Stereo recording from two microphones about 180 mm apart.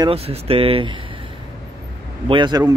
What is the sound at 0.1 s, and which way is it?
Speech, 35° right (ahead or behind).